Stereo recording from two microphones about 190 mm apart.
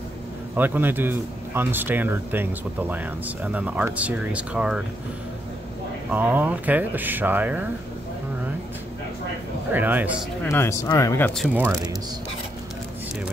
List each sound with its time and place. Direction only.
0.6 s speech: 10° right (ahead or behind)
6.1 s speech: 10° right (ahead or behind)
9.7 s speech: 10° right (ahead or behind)
10.4 s speech: 15° left (ahead or behind)